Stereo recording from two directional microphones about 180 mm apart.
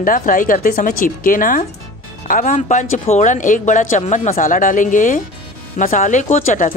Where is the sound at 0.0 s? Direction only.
50° left (ahead or behind).